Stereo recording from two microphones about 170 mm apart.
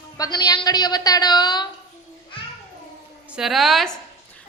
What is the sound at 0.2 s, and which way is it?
A woman's voice, 25° left (ahead or behind).